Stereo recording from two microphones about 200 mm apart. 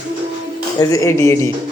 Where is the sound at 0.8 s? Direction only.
15° left (ahead or behind).